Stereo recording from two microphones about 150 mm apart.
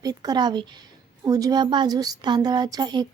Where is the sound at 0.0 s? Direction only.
25° right (ahead or behind).